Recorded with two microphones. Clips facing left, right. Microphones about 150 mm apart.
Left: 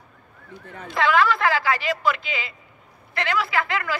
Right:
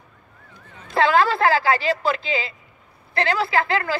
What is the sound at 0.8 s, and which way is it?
A woman's voice, 30° right (ahead or behind).